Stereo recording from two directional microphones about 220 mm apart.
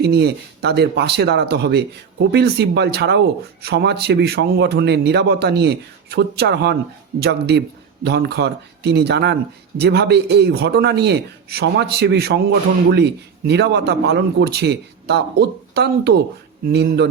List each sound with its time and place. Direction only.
0.0 s speech: 50° right (ahead or behind)